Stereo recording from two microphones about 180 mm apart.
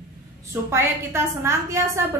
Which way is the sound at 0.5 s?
15° right (ahead or behind).